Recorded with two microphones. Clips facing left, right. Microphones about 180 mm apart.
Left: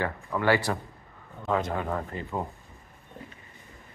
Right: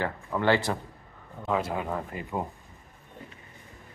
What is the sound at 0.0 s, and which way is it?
Speech, 15° right (ahead or behind).